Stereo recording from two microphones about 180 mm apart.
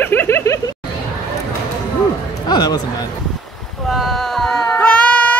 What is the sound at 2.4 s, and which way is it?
Speech, 25° left (ahead or behind).